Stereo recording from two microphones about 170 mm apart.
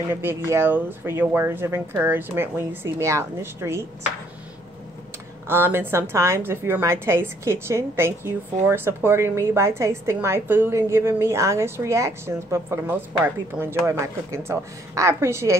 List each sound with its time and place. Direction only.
0.1 s a woman's voice: 15° right (ahead or behind)
5.5 s a woman's voice: 15° right (ahead or behind)